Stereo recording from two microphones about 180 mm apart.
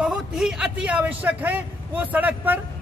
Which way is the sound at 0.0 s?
5° right (ahead or behind).